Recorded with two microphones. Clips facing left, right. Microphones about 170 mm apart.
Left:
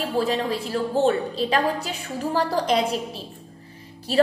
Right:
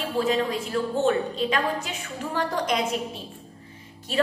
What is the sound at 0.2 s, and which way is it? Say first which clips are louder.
A woman's voice: right 1 dB; 35° left (ahead or behind).